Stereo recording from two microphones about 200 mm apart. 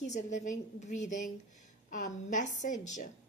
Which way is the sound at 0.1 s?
40° left (ahead or behind).